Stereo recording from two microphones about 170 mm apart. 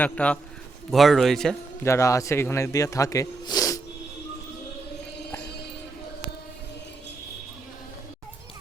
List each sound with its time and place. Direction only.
0.0 s a man's voice: 5° left (ahead or behind)
1.8 s speech: 15° left (ahead or behind)